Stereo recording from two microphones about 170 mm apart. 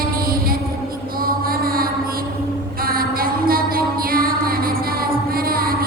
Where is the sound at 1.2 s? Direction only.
60° right (ahead or behind).